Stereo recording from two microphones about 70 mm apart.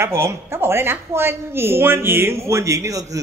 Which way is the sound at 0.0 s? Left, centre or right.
Right.